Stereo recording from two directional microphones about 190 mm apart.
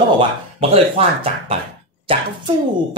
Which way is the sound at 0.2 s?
30° right (ahead or behind).